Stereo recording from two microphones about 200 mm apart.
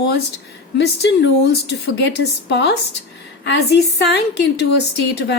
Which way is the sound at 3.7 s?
55° left (ahead or behind).